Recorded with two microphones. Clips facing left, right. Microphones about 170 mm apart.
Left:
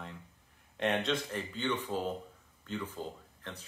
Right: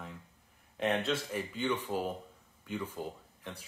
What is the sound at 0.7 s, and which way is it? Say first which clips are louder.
Speech: even; centre (ahead or behind).